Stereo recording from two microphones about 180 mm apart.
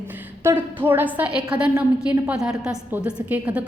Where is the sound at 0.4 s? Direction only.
10° right (ahead or behind).